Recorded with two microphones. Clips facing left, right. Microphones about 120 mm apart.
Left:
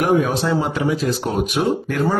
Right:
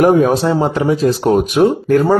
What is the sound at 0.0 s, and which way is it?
Speech, 40° right (ahead or behind).